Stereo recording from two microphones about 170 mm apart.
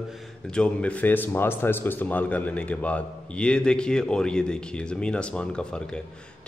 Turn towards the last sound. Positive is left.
turn(degrees=5)  # may be behind; listen again after turning